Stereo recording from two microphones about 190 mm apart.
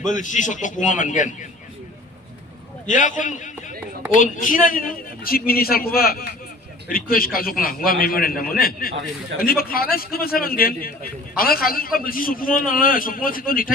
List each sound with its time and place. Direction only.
0.1 s a man's voice: 40° left (ahead or behind)
2.8 s a man's voice: 40° left (ahead or behind)